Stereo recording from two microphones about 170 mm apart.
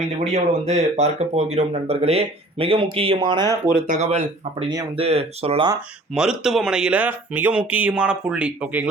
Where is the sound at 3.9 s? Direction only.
40° right (ahead or behind).